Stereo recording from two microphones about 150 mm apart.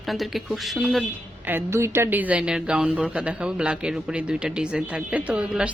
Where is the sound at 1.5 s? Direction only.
15° right (ahead or behind).